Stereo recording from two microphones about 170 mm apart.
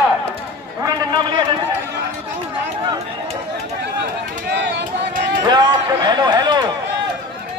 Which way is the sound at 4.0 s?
80° right.